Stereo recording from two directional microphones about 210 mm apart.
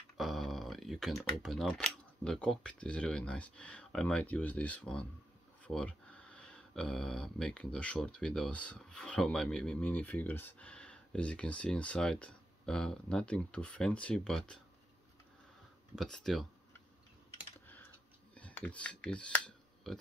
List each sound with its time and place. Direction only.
0.2 s a sound: centre (ahead or behind)
1.3 s speech: centre (ahead or behind)
16.0 s speech: centre (ahead or behind)
18.3 s camera: 5° left (ahead or behind)